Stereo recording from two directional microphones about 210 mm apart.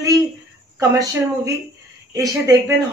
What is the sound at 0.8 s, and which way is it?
Speech, 15° right (ahead or behind).